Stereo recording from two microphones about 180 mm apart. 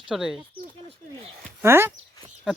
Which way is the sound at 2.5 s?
5° right (ahead or behind).